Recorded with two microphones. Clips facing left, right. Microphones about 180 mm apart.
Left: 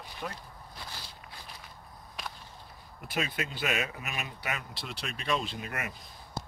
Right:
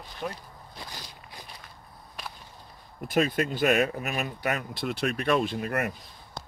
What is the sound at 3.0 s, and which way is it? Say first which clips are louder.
Speech: right 9 dB; 45° right (ahead or behind).